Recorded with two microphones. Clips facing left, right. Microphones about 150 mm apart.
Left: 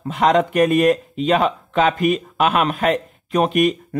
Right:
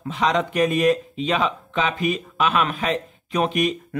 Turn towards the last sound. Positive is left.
turn(degrees=50)  # may be behind; listen again after turning